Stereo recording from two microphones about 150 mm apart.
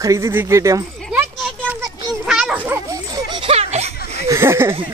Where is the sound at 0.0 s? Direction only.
20° right (ahead or behind).